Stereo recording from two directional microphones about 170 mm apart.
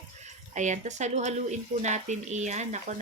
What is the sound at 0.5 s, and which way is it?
Speech, 45° right (ahead or behind).